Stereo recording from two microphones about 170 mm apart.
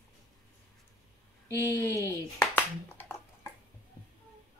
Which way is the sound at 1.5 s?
15° left (ahead or behind).